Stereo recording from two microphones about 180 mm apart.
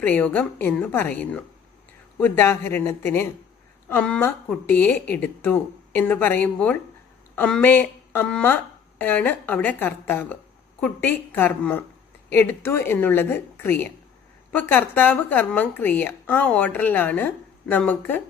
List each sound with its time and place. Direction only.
0.0 s speech: 10° left (ahead or behind)